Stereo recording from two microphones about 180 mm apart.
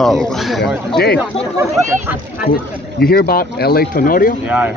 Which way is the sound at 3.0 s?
55° left (ahead or behind).